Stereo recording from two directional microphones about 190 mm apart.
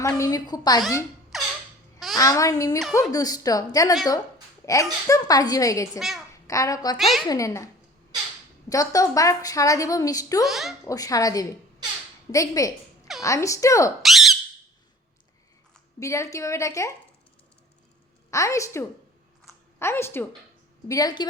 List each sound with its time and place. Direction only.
0.2 s speech: 20° left (ahead or behind)
1.3 s a sound: centre (ahead or behind)
2.1 s a woman's voice: 20° left (ahead or behind)
6.0 s speech: centre (ahead or behind)
6.5 s a woman's voice: 15° left (ahead or behind)
7.0 s speech: centre (ahead or behind)
7.3 s a woman's voice: 15° left (ahead or behind)
8.7 s a woman's voice: 15° left (ahead or behind)
10.4 s speech: centre (ahead or behind)
10.8 s a woman's voice: 20° left (ahead or behind)
14.0 s speech: centre (ahead or behind)
16.0 s a woman's voice: 15° left (ahead or behind)
18.3 s a woman's voice: 15° left (ahead or behind)